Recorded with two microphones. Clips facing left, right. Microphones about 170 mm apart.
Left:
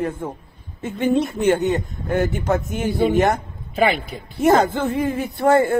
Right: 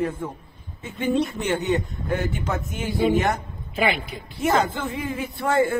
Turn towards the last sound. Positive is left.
turn(degrees=45)  # may be behind; listen again after turning